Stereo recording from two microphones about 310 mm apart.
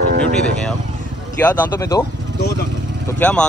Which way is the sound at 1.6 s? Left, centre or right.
Centre.